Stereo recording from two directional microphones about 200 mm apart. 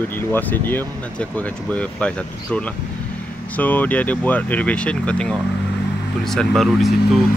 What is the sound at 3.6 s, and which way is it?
Speech, 10° left (ahead or behind).